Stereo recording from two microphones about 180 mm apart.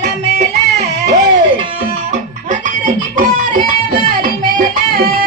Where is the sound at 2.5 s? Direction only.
45° right (ahead or behind).